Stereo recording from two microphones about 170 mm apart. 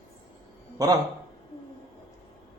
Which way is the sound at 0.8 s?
20° right (ahead or behind).